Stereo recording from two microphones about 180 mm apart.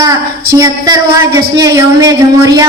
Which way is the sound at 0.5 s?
20° right (ahead or behind).